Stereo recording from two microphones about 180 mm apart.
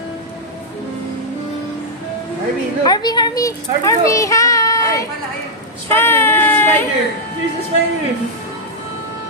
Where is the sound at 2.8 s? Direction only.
20° left (ahead or behind).